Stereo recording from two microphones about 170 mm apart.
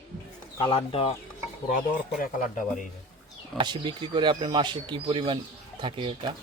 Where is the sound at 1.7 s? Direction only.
55° left (ahead or behind).